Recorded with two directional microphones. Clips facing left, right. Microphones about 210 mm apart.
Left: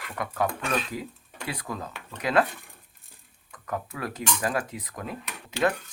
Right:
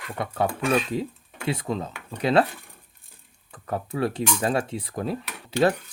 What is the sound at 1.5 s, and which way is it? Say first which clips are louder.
Speech: right 7 dB; 25° right (ahead or behind).